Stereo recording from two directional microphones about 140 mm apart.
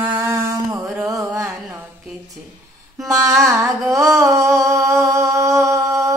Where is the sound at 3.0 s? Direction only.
25° right (ahead or behind).